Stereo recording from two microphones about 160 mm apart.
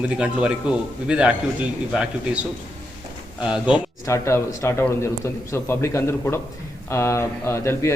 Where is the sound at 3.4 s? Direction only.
5° right (ahead or behind).